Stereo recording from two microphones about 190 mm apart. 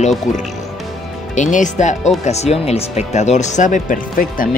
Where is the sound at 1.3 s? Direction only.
40° left (ahead or behind).